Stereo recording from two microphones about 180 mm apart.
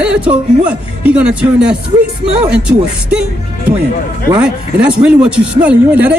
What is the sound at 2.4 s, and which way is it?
Speech, 5° right (ahead or behind).